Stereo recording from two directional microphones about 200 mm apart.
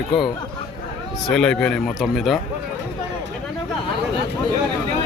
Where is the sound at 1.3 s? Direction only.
5° left (ahead or behind).